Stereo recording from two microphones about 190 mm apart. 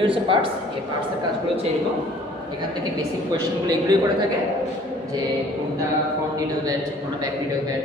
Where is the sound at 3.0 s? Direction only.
20° right (ahead or behind).